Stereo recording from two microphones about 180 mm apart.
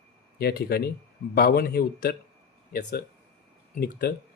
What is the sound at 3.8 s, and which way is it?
Speech, 60° left (ahead or behind).